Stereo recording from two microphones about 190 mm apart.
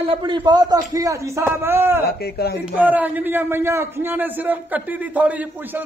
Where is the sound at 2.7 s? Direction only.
10° right (ahead or behind).